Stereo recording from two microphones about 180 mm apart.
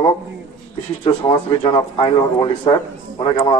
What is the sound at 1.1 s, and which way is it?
Speech, 25° left (ahead or behind).